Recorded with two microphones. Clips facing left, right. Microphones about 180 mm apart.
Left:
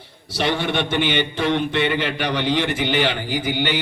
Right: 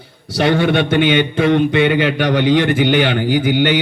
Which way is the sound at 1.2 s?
55° right (ahead or behind).